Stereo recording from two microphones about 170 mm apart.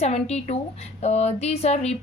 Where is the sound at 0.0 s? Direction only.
40° left (ahead or behind).